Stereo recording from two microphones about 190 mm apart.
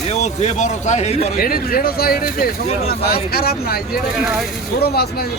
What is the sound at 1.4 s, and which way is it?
Speech, 50° left (ahead or behind).